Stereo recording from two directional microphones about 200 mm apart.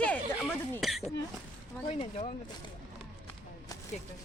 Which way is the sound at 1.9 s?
30° left (ahead or behind).